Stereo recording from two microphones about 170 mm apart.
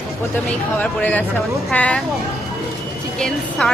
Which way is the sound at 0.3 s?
10° left (ahead or behind).